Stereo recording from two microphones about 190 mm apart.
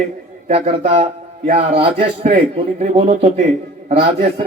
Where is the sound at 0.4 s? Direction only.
35° right (ahead or behind).